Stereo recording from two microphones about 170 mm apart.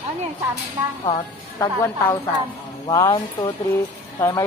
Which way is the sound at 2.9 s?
20° left (ahead or behind).